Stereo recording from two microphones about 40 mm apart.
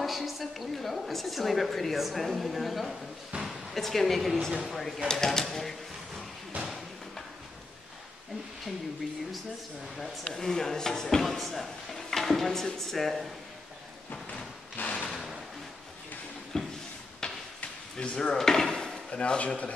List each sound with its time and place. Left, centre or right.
0.0 s a woman's voice: centre
5.0 s speech: centre
10.2 s speech: centre
15.0 s a sound: centre
16.5 s a sound: centre
17.9 s speech: left